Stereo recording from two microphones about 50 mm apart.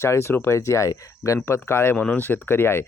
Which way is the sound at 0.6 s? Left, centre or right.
Left.